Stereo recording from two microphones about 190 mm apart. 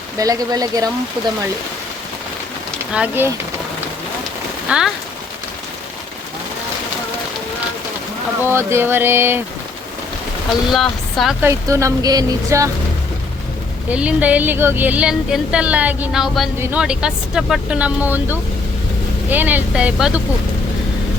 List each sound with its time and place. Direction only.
0.2 s speech: 20° right (ahead or behind)
2.9 s a woman's voice: 10° right (ahead or behind)
4.7 s a woman's voice: 5° right (ahead or behind)
8.4 s a woman's voice: 10° right (ahead or behind)
10.7 s speech: centre (ahead or behind)
11.4 s a woman's voice: 15° right (ahead or behind)
13.9 s a woman's voice: 5° right (ahead or behind)